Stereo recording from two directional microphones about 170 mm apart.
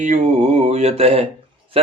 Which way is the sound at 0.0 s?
45° right (ahead or behind).